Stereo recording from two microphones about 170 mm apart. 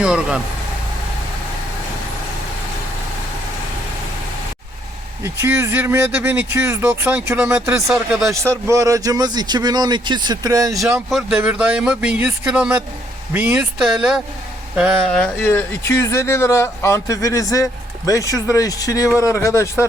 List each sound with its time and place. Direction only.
0.0 s speech: 5° right (ahead or behind)
5.2 s speech: 15° right (ahead or behind)
8.3 s speech: 15° right (ahead or behind)
11.1 s speech: 5° right (ahead or behind); by 19.9 s 15° left (ahead or behind)